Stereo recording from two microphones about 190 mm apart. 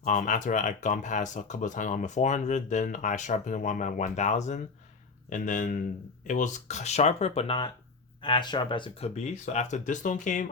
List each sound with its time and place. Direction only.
0.0 s speech: 40° left (ahead or behind)